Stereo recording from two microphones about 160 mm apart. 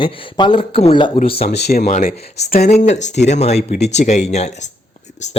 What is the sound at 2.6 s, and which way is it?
Speech, 45° left (ahead or behind).